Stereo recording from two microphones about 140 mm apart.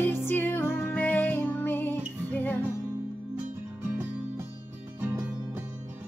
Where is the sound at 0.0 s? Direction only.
15° left (ahead or behind).